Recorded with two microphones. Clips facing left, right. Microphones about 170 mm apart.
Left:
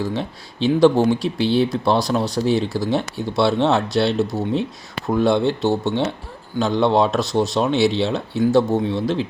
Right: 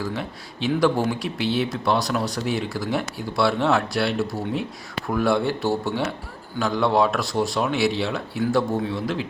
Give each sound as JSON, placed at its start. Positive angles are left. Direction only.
{"t": 0.0, "sound": "speech", "side_deg": 25}